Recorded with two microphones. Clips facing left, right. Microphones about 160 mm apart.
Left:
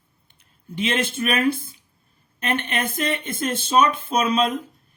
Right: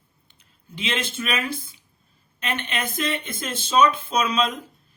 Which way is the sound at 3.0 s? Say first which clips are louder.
Left 3 dB; 50° left (ahead or behind).